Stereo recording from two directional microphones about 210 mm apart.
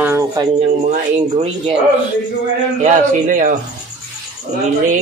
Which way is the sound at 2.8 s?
35° right (ahead or behind).